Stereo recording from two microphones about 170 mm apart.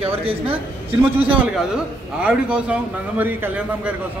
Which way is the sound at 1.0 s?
10° right (ahead or behind).